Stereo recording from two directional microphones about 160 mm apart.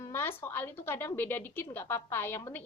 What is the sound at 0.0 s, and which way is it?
A woman's voice, 15° left (ahead or behind).